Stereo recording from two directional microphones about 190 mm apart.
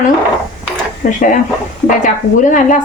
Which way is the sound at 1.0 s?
45° left (ahead or behind).